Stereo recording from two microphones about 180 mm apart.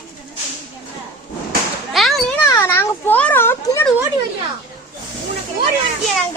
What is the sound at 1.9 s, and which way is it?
Children playing, centre (ahead or behind).